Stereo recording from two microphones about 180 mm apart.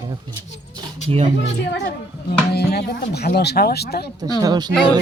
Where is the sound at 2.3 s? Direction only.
60° left (ahead or behind).